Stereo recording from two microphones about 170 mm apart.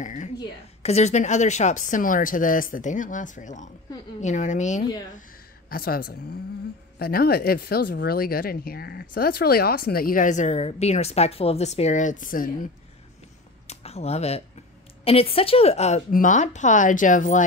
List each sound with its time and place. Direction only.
0.0 s a woman's voice: 45° left (ahead or behind)
5.7 s a woman's voice: 60° left (ahead or behind)
13.7 s a woman's voice: 40° left (ahead or behind)
16.1 s a woman's voice: 50° left (ahead or behind)